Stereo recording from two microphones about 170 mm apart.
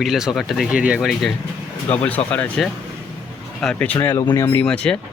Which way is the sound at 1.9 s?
10° left (ahead or behind).